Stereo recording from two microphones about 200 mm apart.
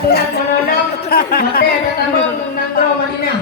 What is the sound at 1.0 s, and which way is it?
Speech, 50° left (ahead or behind).